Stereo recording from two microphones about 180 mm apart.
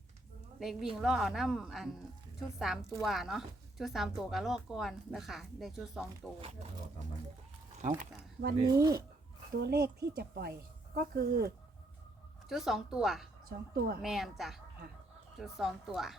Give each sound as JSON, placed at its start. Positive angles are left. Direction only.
{"t": 0.6, "sound": "a woman's voice", "side_deg": 0}
{"t": 6.4, "sound": "speech", "side_deg": -35}
{"t": 8.6, "sound": "speech", "side_deg": -20}
{"t": 9.6, "sound": "speech", "side_deg": -60}
{"t": 12.5, "sound": "a woman's voice", "side_deg": 0}
{"t": 13.7, "sound": "speech", "side_deg": -60}
{"t": 14.0, "sound": "a woman's voice", "side_deg": 0}